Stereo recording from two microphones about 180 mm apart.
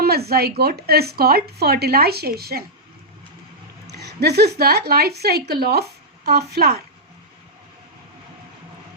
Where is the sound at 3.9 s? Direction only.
65° right (ahead or behind).